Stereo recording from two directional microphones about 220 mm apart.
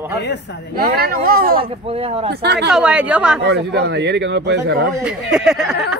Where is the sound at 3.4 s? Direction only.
50° right (ahead or behind).